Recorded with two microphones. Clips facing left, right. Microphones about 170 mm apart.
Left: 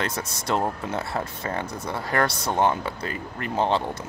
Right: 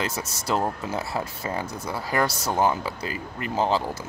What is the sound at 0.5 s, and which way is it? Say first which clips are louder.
Speech: even; 5° right (ahead or behind).